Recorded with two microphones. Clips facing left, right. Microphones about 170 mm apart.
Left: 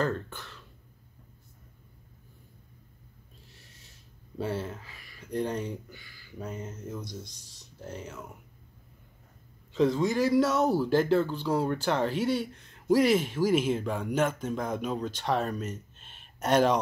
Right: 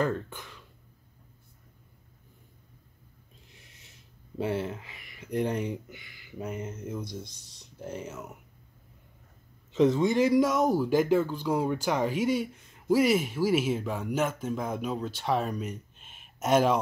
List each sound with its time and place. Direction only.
0.0 s speech: 15° right (ahead or behind)
3.4 s a sound: 15° right (ahead or behind)
4.4 s speech: 20° right (ahead or behind)
9.7 s speech: 25° right (ahead or behind); by 16.7 s 5° right (ahead or behind)